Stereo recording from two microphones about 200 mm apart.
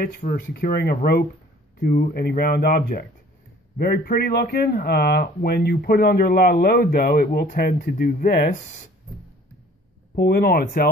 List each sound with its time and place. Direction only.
0.0 s speech: 50° left (ahead or behind)
10.1 s speech: 50° left (ahead or behind)